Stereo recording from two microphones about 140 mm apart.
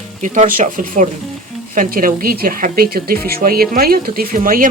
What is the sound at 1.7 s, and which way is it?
Speech, 90° right.